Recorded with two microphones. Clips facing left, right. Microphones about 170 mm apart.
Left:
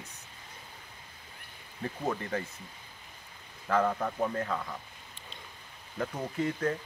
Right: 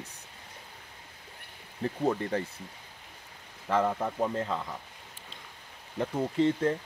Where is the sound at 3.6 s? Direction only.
20° right (ahead or behind).